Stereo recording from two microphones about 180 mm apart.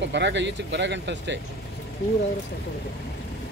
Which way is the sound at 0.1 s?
80° right.